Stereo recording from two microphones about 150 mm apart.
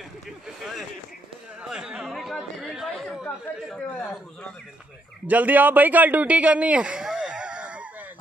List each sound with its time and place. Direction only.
1.6 s chatter: 5° right (ahead or behind)
5.2 s a man's voice: 10° right (ahead or behind)